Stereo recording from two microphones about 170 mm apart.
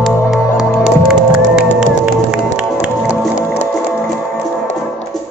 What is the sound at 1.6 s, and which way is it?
Music, 5° right (ahead or behind).